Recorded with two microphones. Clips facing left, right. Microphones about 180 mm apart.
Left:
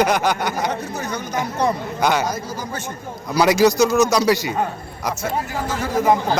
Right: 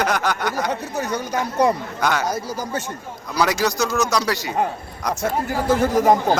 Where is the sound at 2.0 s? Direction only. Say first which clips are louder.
Left 5 dB; 15° left (ahead or behind).